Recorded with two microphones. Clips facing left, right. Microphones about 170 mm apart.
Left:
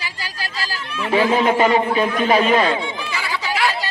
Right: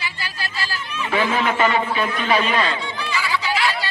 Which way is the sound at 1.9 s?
40° left (ahead or behind).